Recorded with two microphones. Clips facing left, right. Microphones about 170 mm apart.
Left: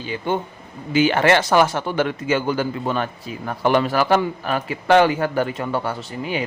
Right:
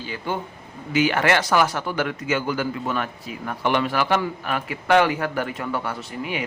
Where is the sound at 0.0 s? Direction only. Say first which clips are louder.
Left 5 dB; 20° left (ahead or behind).